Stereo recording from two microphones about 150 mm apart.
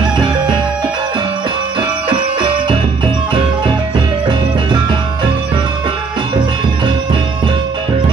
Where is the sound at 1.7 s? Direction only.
30° right (ahead or behind).